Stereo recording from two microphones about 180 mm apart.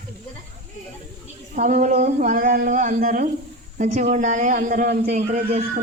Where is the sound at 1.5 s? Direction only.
50° right (ahead or behind).